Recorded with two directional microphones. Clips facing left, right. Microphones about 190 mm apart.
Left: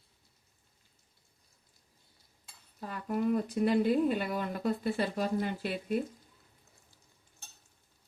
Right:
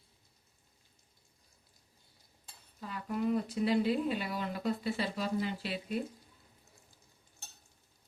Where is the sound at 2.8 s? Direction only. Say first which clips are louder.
Left 3 dB; 50° left (ahead or behind).